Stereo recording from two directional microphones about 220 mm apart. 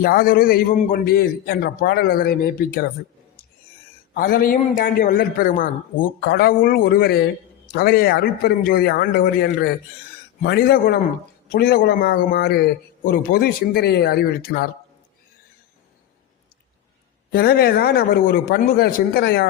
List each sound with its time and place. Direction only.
0.0 s a man's voice: 40° left (ahead or behind)
4.1 s a man's voice: 40° left (ahead or behind)
17.3 s a man's voice: 45° left (ahead or behind)